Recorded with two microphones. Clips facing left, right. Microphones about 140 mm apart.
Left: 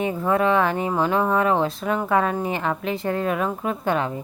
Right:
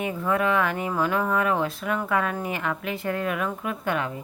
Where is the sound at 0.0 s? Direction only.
30° left (ahead or behind).